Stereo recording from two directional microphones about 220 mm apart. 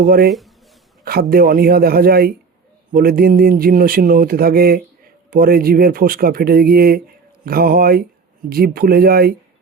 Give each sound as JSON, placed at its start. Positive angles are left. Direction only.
{"t": 0.0, "sound": "a man's voice", "side_deg": -40}
{"t": 0.3, "sound": "speech", "side_deg": 0}
{"t": 1.0, "sound": "a man's voice", "side_deg": -45}